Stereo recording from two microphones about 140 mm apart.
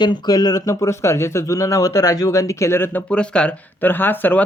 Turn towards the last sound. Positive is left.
turn(degrees=15)  # may be behind; listen again after turning